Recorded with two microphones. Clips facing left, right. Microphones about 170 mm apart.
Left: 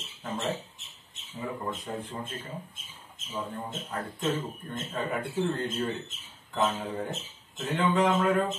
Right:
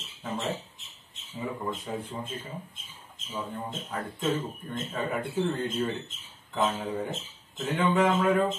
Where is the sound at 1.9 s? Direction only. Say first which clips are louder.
Right 1 dB; 5° right (ahead or behind).